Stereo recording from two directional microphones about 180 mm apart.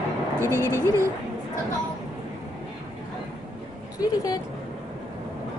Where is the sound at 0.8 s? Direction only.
15° right (ahead or behind).